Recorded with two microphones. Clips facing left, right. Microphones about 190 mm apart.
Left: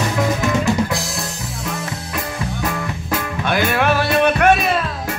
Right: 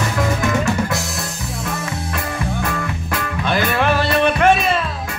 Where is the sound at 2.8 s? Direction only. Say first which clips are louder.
Left 1 dB; 20° left (ahead or behind).